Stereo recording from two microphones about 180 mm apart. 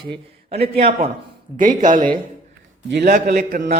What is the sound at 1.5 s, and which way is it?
Speech, 45° right (ahead or behind).